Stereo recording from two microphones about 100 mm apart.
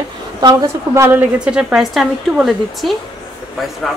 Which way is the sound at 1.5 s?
10° right (ahead or behind).